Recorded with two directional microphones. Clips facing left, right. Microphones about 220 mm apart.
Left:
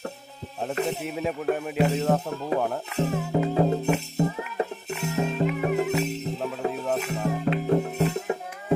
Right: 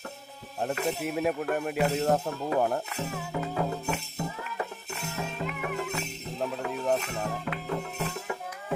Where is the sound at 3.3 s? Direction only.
30° left (ahead or behind).